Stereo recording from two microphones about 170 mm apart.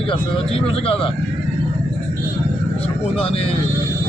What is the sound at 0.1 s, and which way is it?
A man's voice, 35° left (ahead or behind).